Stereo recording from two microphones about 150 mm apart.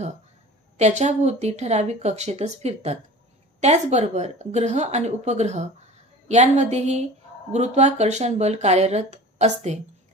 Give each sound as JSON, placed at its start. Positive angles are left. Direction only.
{"t": 0.7, "sound": "a woman's voice", "side_deg": -50}